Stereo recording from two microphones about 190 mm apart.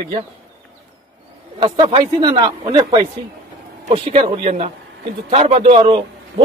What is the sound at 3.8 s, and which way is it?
A man's voice, 35° right (ahead or behind).